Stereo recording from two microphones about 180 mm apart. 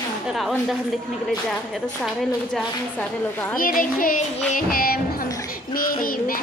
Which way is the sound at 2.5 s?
5° left (ahead or behind).